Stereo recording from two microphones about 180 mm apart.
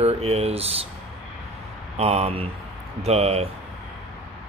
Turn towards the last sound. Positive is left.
turn(degrees=-35)  # may be behind; listen again after turning